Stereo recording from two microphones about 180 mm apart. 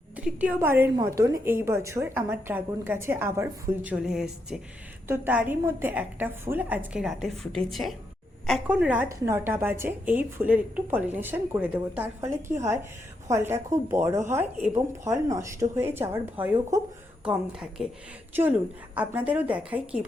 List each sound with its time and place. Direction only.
0.2 s a woman's voice: 5° right (ahead or behind)
17.2 s a woman's voice: 5° right (ahead or behind)
18.9 s a woman's voice: 10° right (ahead or behind)